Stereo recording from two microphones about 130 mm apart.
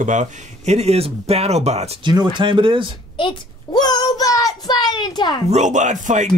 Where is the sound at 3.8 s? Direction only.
35° left (ahead or behind).